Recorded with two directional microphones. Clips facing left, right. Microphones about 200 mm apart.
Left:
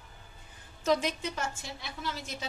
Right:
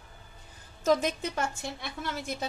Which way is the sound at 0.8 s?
50° right (ahead or behind).